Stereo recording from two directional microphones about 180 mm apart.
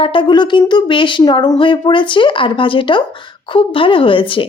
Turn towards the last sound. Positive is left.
turn(degrees=30)  # may be behind; listen again after turning